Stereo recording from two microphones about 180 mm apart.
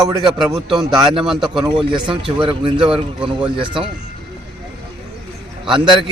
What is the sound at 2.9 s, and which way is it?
Speech, 5° right (ahead or behind).